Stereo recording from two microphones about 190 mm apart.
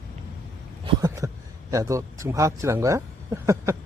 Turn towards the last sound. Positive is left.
turn(degrees=-15)  # may be behind; listen again after turning